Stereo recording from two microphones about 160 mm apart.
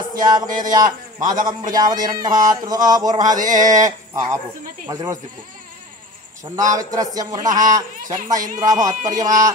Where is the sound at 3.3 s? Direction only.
55° right (ahead or behind).